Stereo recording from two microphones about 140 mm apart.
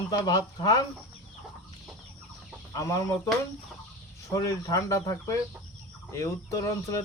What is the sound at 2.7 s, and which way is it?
Speech, 25° left (ahead or behind).